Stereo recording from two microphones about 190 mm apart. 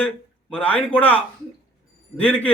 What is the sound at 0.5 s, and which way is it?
A man's voice, 5° left (ahead or behind).